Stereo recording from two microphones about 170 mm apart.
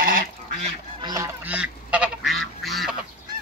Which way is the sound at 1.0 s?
20° right (ahead or behind).